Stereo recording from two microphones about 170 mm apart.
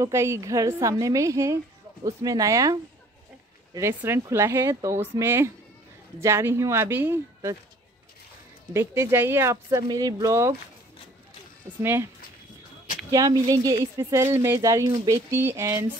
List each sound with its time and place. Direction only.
0.0 s a woman's voice: 15° right (ahead or behind)
8.7 s speech: 15° right (ahead or behind)
11.8 s speech: 15° right (ahead or behind)
13.1 s a woman's voice: 20° right (ahead or behind)